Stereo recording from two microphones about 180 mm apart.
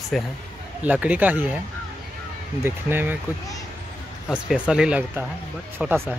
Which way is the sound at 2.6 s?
10° right (ahead or behind).